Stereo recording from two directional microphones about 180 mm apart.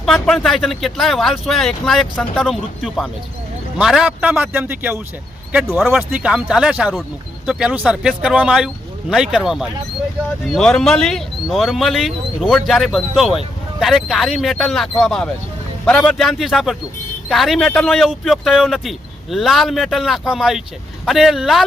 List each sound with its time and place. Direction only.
0.0 s speech: centre (ahead or behind)